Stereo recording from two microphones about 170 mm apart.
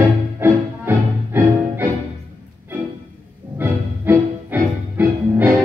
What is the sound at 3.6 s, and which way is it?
Music, 10° right (ahead or behind).